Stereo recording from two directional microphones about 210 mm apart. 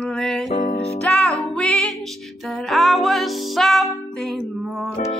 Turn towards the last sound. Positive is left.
turn(degrees=0)  # may be behind; listen again after turning